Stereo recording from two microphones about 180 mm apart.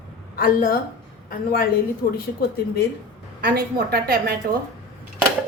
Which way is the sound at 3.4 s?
60° right (ahead or behind).